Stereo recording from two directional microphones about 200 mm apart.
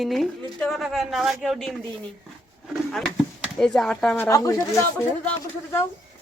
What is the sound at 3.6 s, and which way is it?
Speech, 5° left (ahead or behind).